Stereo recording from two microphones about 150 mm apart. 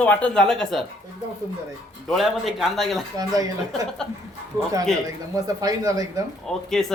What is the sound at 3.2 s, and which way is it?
Speech, 25° right (ahead or behind).